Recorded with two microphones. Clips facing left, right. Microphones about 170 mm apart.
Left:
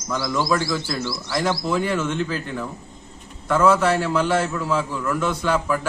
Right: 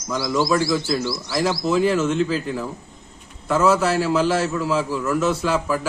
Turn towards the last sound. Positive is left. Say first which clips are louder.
# even
turn(degrees=-5)  # may be behind; listen again after turning